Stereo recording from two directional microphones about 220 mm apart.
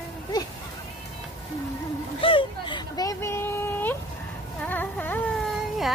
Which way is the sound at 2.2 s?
25° left (ahead or behind).